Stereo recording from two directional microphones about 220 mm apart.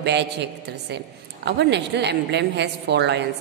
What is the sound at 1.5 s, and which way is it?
A man's voice, 50° right (ahead or behind).